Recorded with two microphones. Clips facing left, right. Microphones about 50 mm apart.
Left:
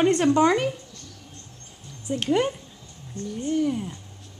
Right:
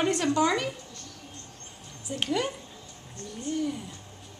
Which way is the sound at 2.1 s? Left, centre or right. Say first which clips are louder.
Left 4 dB; left.